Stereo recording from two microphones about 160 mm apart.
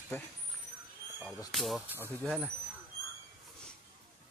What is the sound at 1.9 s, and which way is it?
Speech, 15° right (ahead or behind).